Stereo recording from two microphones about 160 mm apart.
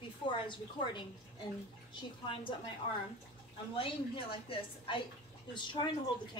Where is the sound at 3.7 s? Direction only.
35° left (ahead or behind).